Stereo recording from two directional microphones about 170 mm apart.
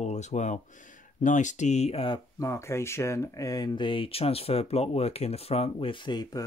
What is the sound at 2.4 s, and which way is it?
Speech, 15° left (ahead or behind).